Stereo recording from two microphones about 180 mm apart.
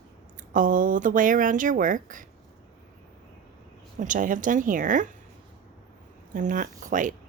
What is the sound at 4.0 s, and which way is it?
Speech, 45° right (ahead or behind).